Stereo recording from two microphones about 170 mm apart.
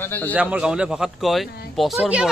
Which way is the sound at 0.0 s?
10° left (ahead or behind).